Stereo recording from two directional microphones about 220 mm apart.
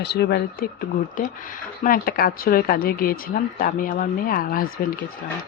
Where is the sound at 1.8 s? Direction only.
40° left (ahead or behind).